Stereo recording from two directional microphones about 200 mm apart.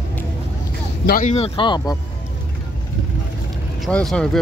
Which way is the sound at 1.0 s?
45° left (ahead or behind).